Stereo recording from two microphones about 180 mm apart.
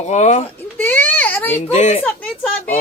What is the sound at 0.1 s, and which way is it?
Speech, 40° left (ahead or behind).